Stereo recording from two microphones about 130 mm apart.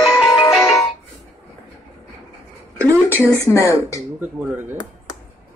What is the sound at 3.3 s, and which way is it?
Speech, 25° left (ahead or behind).